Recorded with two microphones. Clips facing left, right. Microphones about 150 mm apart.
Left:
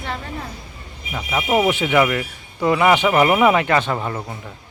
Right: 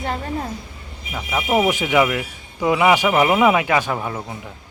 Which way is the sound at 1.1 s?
Centre (ahead or behind).